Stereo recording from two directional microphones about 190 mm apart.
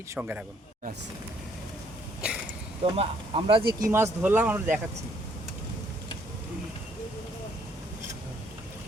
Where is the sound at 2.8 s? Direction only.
30° right (ahead or behind); by 4.8 s 10° right (ahead or behind).